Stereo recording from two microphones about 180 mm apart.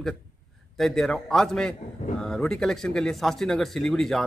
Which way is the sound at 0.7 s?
Centre (ahead or behind).